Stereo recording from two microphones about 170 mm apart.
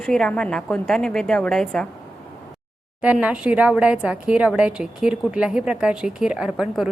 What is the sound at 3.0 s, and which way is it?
Speech, 10° right (ahead or behind).